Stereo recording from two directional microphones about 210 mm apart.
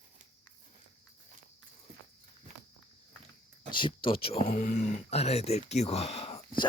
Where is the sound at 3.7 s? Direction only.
25° left (ahead or behind).